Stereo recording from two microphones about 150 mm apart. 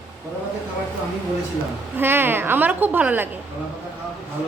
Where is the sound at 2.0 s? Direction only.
15° right (ahead or behind).